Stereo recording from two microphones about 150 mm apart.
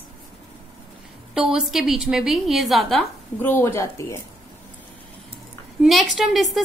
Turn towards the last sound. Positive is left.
turn(degrees=0)  # may be behind; listen again after turning